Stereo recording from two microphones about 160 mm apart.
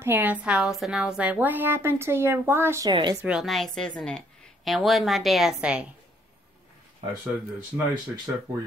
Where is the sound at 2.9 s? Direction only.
30° right (ahead or behind).